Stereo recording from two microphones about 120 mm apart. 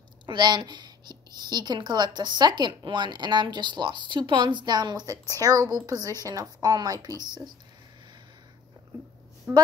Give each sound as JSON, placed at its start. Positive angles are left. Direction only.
{"t": 0.3, "sound": "speech", "side_deg": -40}
{"t": 9.5, "sound": "speech", "side_deg": -20}